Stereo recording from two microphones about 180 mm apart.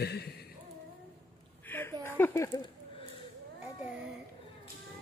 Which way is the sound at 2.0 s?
10° left (ahead or behind).